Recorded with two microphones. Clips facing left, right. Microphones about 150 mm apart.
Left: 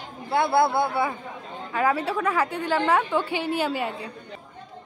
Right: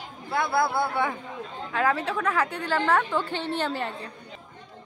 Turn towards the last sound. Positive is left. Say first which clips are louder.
# left 3 dB
turn(degrees=10)  # may be behind; listen again after turning